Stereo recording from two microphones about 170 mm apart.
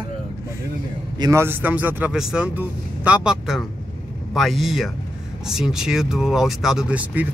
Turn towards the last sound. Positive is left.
turn(degrees=-10)  # may be behind; listen again after turning